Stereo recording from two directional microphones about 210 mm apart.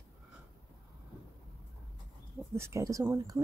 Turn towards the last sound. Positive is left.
turn(degrees=-15)  # may be behind; listen again after turning